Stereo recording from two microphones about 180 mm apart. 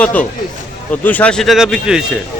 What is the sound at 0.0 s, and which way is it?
A man's voice, 10° left (ahead or behind).